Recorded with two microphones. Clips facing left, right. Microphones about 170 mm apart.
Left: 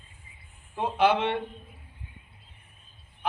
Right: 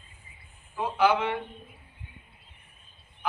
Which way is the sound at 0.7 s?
25° left (ahead or behind).